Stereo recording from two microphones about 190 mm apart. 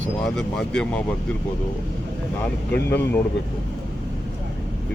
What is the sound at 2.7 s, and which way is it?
Speech, 10° left (ahead or behind).